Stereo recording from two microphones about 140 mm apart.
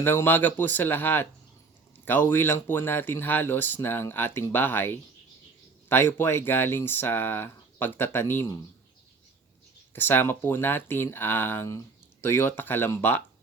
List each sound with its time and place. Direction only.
0.0 s speech: 15° left (ahead or behind)
9.9 s speech: 15° left (ahead or behind)